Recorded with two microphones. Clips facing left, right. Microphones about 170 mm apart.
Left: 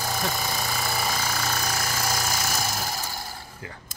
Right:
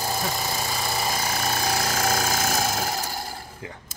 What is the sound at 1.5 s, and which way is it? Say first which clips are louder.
Engine: right 4 dB; 35° right (ahead or behind).